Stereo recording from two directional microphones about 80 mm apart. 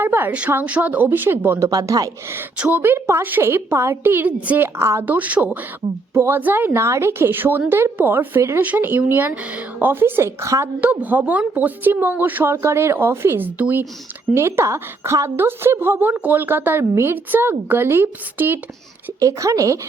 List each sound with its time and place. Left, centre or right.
0.0 s a woman's voice: right
1.5 s speech: right
2.6 s a woman's voice: centre
2.8 s a woman's voice: right
5.0 s a woman's voice: centre
8.4 s a woman's voice: right
8.6 s a woman's voice: right
10.8 s a woman's voice: right
19.2 s speech: right